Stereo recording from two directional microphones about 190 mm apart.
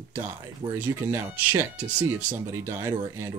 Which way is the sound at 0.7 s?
10° right (ahead or behind).